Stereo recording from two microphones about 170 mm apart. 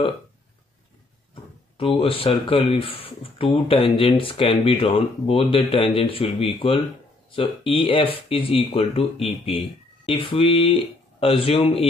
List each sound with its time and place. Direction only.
1.8 s speech: 35° left (ahead or behind)